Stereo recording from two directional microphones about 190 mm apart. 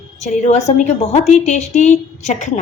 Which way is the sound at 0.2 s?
35° left (ahead or behind).